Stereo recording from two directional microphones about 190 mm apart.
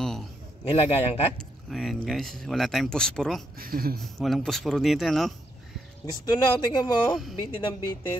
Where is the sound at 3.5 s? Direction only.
50° right (ahead or behind).